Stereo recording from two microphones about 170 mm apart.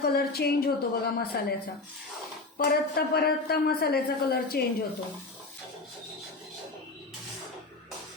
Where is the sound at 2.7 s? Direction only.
70° left (ahead or behind).